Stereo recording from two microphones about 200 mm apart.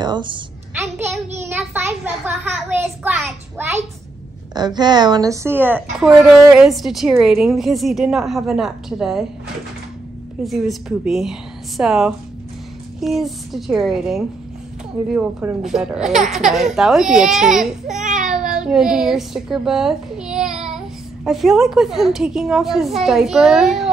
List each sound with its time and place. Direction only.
0.0 s a woman's voice: 25° right (ahead or behind)
1.6 s a sound: 10° right (ahead or behind)
4.6 s a woman's voice: 20° right (ahead or behind); by 9.2 s centre (ahead or behind)
10.4 s speech: centre (ahead or behind)